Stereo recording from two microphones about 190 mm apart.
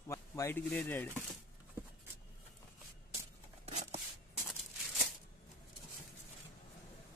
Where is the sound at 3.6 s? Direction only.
35° right (ahead or behind).